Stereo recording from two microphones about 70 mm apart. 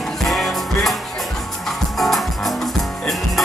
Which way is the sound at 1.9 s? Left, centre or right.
Centre.